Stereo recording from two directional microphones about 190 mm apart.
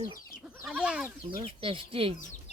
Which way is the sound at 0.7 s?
5° right (ahead or behind).